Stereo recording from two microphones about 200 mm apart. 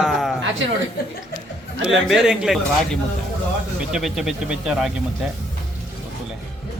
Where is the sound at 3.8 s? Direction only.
5° right (ahead or behind).